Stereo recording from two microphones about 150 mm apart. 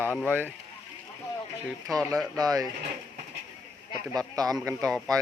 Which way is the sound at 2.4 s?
25° right (ahead or behind).